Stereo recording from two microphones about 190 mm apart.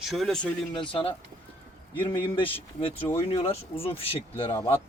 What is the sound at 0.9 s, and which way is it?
Speech, 30° left (ahead or behind).